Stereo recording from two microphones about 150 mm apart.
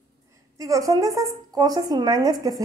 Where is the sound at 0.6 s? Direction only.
20° right (ahead or behind).